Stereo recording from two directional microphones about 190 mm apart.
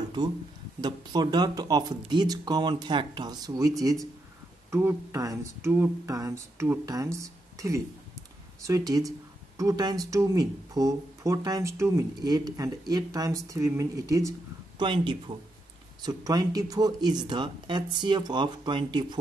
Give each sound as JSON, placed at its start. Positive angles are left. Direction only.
{"t": 0.7, "sound": "speech", "side_deg": -20}